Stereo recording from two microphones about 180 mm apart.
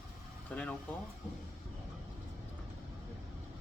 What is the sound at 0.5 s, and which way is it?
Speech, 5° left (ahead or behind).